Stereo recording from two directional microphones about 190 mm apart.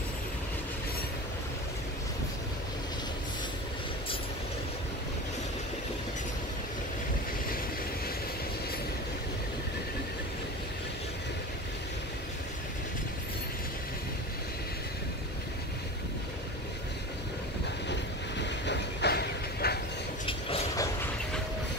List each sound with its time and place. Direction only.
18.4 s vehicle: 65° left (ahead or behind)
20.2 s vehicle: 30° left (ahead or behind)